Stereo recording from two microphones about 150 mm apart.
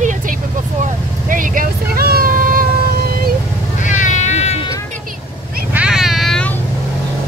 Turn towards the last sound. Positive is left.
turn(degrees=5)  # may be behind; listen again after turning